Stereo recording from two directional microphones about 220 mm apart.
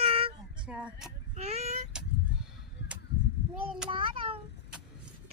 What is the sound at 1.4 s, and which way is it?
Child singing, 30° right (ahead or behind).